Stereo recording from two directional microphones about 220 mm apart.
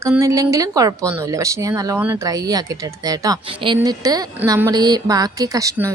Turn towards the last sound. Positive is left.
turn(degrees=-15)  # may be behind; listen again after turning